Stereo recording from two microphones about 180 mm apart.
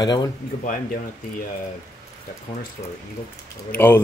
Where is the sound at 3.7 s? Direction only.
10° left (ahead or behind).